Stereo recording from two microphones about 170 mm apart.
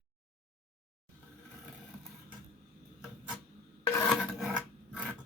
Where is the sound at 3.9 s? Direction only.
10° left (ahead or behind).